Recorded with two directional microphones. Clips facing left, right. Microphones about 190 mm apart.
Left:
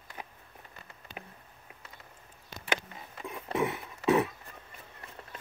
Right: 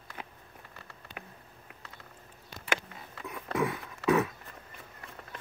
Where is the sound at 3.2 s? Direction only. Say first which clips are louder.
Even; 25° left (ahead or behind).